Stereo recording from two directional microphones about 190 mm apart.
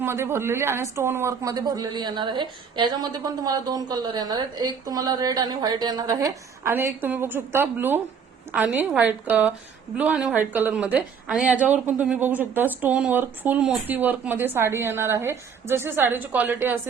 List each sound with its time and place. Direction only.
0.0 s a woman's voice: 15° right (ahead or behind)